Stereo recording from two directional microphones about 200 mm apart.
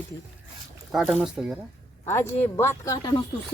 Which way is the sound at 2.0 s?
10° left (ahead or behind).